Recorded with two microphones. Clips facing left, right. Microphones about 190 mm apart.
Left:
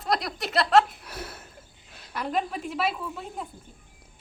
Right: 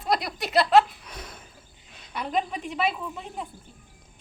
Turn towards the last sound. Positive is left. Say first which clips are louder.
# even
turn(degrees=0)  # may be behind; listen again after turning